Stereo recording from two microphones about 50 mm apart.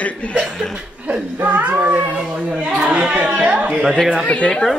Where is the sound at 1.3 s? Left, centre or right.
Right.